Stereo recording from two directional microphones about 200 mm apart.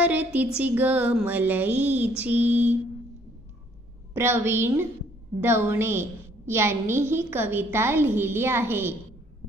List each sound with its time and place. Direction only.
0.0 s a woman's voice: 10° right (ahead or behind)
4.1 s a woman's voice: 10° right (ahead or behind)